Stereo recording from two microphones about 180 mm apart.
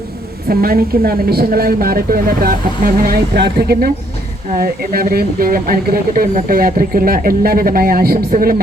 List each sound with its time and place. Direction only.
0.4 s a woman's voice: 55° right (ahead or behind)